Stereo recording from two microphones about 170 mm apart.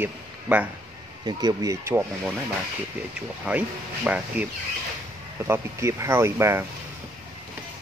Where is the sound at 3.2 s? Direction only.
10° right (ahead or behind).